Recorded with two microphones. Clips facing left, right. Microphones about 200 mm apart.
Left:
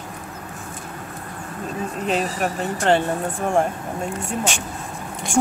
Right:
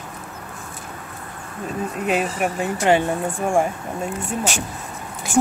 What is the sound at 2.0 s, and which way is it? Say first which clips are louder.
Speech: right 1 dB; 10° right (ahead or behind).